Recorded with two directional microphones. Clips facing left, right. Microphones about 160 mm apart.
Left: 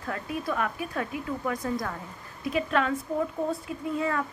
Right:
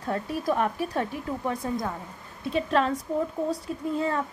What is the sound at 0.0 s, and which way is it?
A woman's voice, 35° right (ahead or behind).